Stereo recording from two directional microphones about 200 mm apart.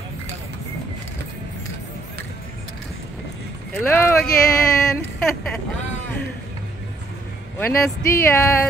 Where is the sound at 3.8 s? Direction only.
10° left (ahead or behind).